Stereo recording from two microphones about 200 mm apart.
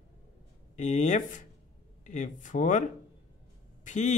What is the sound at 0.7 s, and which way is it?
Speech, 35° left (ahead or behind).